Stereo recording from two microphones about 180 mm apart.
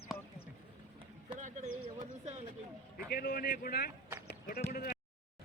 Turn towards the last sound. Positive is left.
turn(degrees=55)  # may be behind; listen again after turning